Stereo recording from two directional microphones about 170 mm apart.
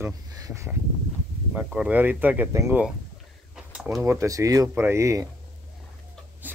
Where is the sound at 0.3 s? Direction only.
20° right (ahead or behind).